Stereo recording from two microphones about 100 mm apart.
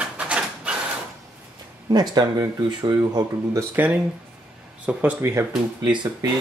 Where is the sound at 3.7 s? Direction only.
15° right (ahead or behind).